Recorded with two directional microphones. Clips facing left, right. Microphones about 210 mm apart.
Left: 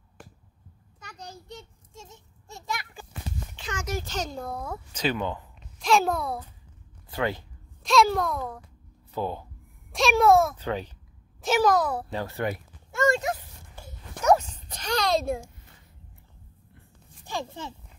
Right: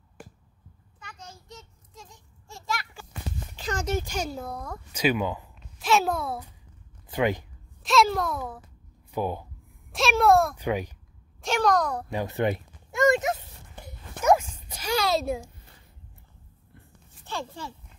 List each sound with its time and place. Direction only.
0.9 s a child's voice: 40° left (ahead or behind); by 3.1 s 15° left (ahead or behind)
3.5 s speech: 35° right (ahead or behind)
4.0 s a child's voice: 10° right (ahead or behind)
4.9 s a woman's voice: 10° right (ahead or behind)
7.1 s speech: 15° right (ahead or behind)
7.8 s a child's voice: centre (ahead or behind)
9.9 s a child's voice: centre (ahead or behind)
10.5 s a child's voice: 15° right (ahead or behind)
11.4 s a child's voice: 5° left (ahead or behind)
12.1 s a sound: 15° right (ahead or behind); by 15.4 s centre (ahead or behind)
17.2 s a child's voice: 15° left (ahead or behind)